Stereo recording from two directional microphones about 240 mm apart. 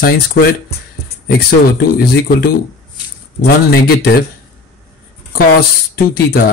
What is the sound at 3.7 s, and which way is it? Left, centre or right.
Speech, left.